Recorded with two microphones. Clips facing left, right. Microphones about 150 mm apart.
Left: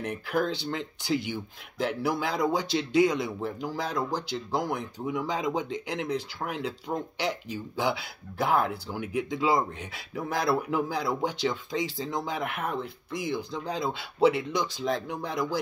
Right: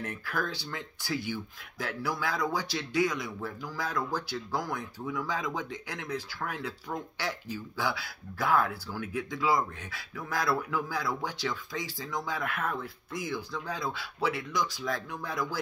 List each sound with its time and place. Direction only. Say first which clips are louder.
0.0 s speech: left 6 dB; 20° left (ahead or behind)